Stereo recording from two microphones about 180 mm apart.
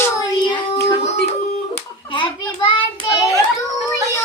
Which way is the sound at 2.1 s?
25° left (ahead or behind).